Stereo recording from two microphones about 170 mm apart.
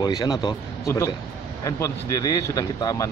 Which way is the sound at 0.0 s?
25° left (ahead or behind).